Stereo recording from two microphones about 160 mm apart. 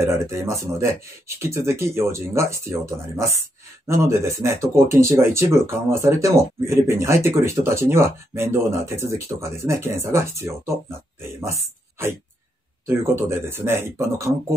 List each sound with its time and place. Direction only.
0.0 s speech: 15° right (ahead or behind)